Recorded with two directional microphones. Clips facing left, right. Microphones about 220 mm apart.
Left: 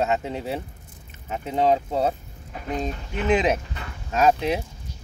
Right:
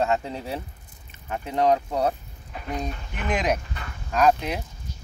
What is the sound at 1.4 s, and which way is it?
Speech, 25° left (ahead or behind).